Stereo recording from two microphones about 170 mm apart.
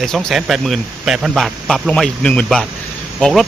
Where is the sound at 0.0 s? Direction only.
5° left (ahead or behind).